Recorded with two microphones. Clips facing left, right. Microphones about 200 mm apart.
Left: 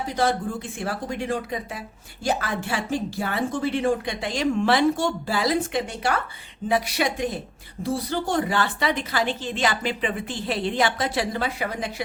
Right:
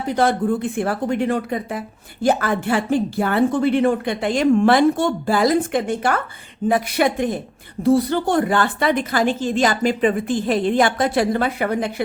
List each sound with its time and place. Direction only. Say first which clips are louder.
0.1 s a woman's voice: right 7 dB; 60° right (ahead or behind)